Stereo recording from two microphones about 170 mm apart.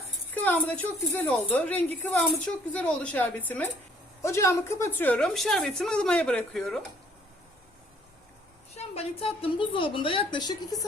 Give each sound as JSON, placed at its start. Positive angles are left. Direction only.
{"t": 0.4, "sound": "a woman's voice", "side_deg": 10}
{"t": 8.7, "sound": "a woman's voice", "side_deg": 40}